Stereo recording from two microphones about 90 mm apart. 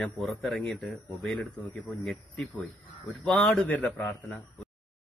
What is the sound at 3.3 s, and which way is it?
Speech, 5° left (ahead or behind).